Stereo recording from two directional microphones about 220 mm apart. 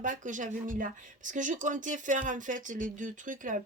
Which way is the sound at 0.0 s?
35° right (ahead or behind).